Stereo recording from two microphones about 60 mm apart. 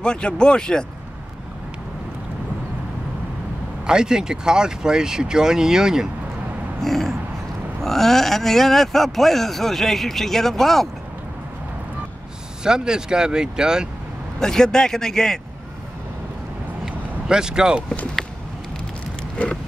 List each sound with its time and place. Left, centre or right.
0.0 s speech: centre
3.8 s speech: centre
6.8 s speech: centre
12.6 s speech: centre
14.4 s speech: centre
16.8 s vehicle: centre
19.3 s vehicle: centre